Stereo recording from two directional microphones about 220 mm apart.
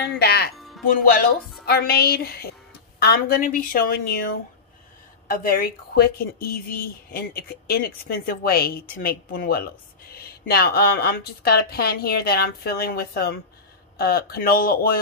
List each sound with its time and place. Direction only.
0.2 s speech: 50° left (ahead or behind)
0.5 s music: centre (ahead or behind)
1.7 s speech: 45° left (ahead or behind)
5.3 s speech: 40° left (ahead or behind)